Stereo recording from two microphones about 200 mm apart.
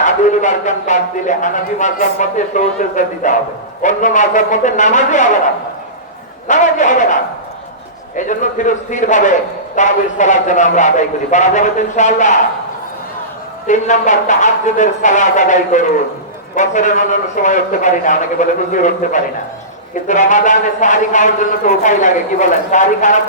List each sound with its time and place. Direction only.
0.0 s speech: 35° left (ahead or behind)
6.5 s speech: 40° left (ahead or behind)
13.7 s speech: 35° left (ahead or behind)